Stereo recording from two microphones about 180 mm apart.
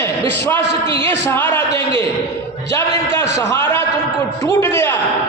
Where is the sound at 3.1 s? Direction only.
15° left (ahead or behind).